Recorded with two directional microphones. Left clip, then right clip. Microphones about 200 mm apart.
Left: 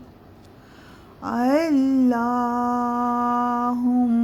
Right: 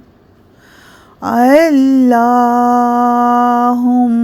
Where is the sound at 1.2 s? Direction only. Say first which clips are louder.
Right 13 dB; 35° right (ahead or behind).